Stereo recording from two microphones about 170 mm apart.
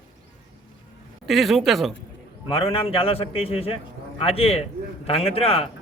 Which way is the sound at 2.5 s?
35° left (ahead or behind).